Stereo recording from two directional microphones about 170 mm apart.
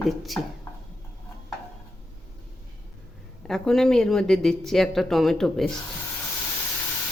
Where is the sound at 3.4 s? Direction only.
Centre (ahead or behind).